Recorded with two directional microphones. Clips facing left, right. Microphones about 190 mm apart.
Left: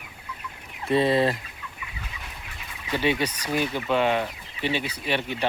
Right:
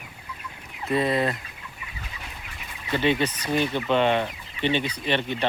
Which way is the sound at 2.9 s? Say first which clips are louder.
Right 2 dB; 10° left (ahead or behind).